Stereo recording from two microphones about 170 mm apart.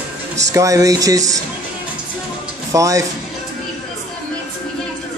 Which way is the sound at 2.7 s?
20° right (ahead or behind).